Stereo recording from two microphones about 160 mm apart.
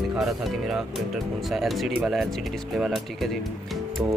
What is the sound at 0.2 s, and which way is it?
Speech, centre (ahead or behind).